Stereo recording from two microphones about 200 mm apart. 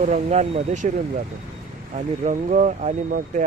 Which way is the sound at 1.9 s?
35° right (ahead or behind).